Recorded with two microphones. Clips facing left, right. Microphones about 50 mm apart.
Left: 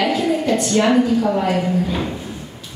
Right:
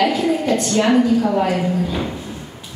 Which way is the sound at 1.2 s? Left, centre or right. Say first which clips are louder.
Even; centre.